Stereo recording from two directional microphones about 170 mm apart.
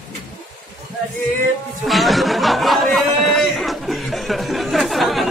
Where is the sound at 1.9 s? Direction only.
Centre (ahead or behind).